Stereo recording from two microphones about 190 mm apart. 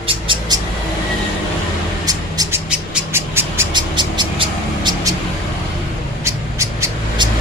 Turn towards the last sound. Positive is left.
turn(degrees=-20)  # may be behind; listen again after turning